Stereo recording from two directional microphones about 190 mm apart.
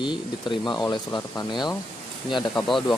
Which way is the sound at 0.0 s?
25° left (ahead or behind).